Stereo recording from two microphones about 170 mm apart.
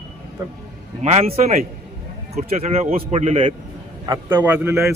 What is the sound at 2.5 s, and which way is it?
Speech, 45° right (ahead or behind).